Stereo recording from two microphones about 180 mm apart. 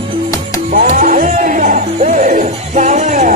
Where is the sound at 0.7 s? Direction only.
55° right (ahead or behind).